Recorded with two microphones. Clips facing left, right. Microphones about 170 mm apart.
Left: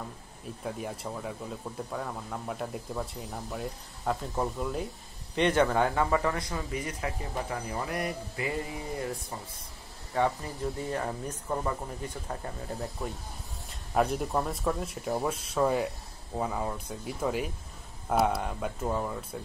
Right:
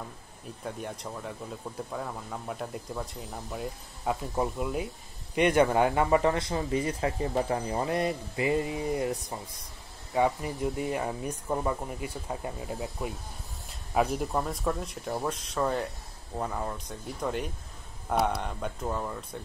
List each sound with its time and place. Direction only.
0.7 s a man's voice: 5° left (ahead or behind)